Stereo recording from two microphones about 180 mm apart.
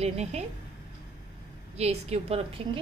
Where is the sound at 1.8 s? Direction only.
35° right (ahead or behind).